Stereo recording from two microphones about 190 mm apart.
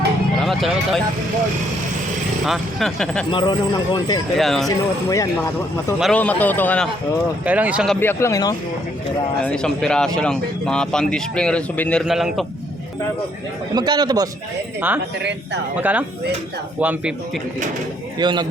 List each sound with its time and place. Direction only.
0.4 s speech: centre (ahead or behind)
2.5 s a man's voice: centre (ahead or behind)
3.3 s speech: 25° left (ahead or behind)
4.4 s a man's voice: centre (ahead or behind)
5.0 s a man's voice: 15° left (ahead or behind)
6.0 s a man's voice: 5° left (ahead or behind)
7.4 s speech: 10° right (ahead or behind)
7.9 s a man's voice: 15° left (ahead or behind)
9.4 s a man's voice: 5° left (ahead or behind)
13.7 s a man's voice: 20° right (ahead or behind)
15.2 s speech: 65° right (ahead or behind)
15.8 s a man's voice: 10° right (ahead or behind)
18.2 s a man's voice: 20° right (ahead or behind)